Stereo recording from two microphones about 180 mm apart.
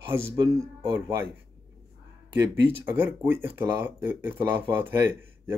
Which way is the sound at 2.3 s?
15° right (ahead or behind).